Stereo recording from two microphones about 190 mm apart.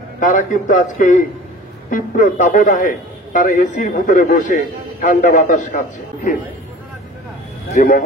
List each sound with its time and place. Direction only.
0.2 s a man's voice: 40° left (ahead or behind)
7.7 s a man's voice: 45° left (ahead or behind)